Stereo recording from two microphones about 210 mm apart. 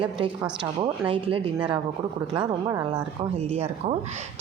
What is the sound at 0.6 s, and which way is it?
Speech, 25° right (ahead or behind).